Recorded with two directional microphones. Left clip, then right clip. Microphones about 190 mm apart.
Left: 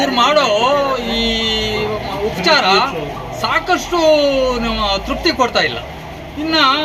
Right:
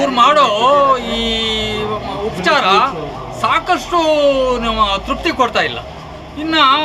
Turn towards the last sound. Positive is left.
turn(degrees=-25)  # may be behind; listen again after turning